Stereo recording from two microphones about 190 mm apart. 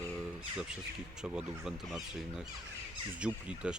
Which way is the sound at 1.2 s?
5° right (ahead or behind).